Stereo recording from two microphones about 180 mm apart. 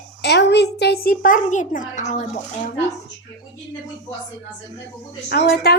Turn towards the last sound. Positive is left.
turn(degrees=60)  # may be behind; listen again after turning